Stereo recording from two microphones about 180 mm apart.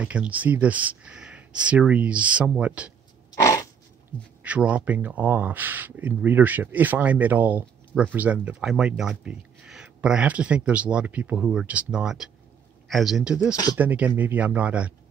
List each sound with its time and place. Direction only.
0.0 s speech: 5° right (ahead or behind)
3.3 s dog: 20° left (ahead or behind)
4.4 s a man's voice: 5° right (ahead or behind)